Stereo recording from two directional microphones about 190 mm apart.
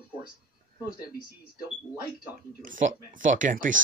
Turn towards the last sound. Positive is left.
turn(degrees=-45)  # may be behind; listen again after turning